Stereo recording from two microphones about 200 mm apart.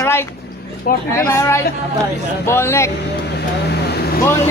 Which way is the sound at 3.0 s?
55° left (ahead or behind).